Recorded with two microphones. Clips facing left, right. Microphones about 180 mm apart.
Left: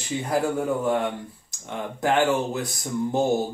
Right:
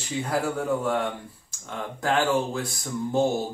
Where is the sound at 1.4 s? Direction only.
20° left (ahead or behind).